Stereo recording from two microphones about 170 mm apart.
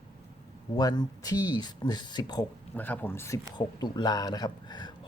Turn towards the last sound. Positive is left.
turn(degrees=25)  # may be behind; listen again after turning